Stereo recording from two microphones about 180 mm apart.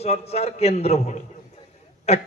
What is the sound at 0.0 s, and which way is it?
A man's voice, 35° left (ahead or behind).